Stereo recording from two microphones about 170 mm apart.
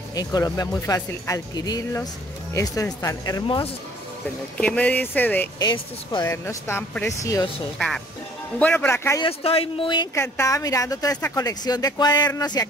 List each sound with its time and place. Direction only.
0.1 s speech: 20° left (ahead or behind)
4.6 s speech: 5° left (ahead or behind)
5.6 s speech: 25° left (ahead or behind)
6.2 s speech: 15° left (ahead or behind)
8.5 s speech: 10° left (ahead or behind)
9.2 s speech: 35° left (ahead or behind)
10.1 s speech: 15° left (ahead or behind)